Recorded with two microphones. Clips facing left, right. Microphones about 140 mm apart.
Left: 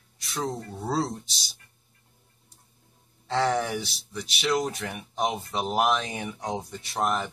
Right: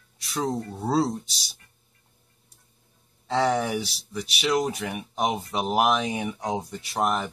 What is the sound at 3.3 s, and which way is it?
Speech, 5° right (ahead or behind).